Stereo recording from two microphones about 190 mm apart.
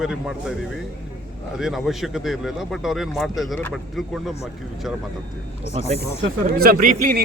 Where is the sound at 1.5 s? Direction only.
Centre (ahead or behind).